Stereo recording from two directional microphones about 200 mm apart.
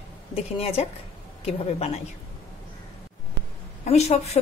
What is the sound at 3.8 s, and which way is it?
Speech, 35° left (ahead or behind).